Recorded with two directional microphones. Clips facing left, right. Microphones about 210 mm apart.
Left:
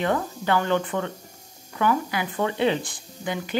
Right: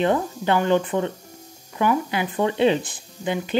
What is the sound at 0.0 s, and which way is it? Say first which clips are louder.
Speech: right 4 dB; 20° right (ahead or behind).